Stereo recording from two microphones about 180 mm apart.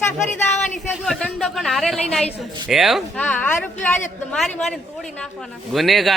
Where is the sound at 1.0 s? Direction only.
Centre (ahead or behind).